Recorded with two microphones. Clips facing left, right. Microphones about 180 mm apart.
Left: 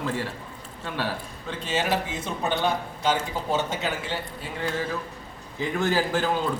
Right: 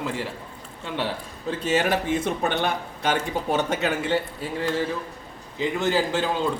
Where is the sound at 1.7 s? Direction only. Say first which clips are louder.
Right 4 dB; 55° right (ahead or behind).